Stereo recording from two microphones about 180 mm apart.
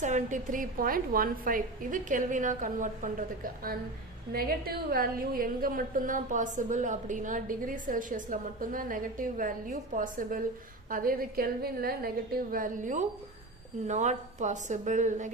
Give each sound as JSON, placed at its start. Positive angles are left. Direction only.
{"t": 0.0, "sound": "a woman's voice", "side_deg": -45}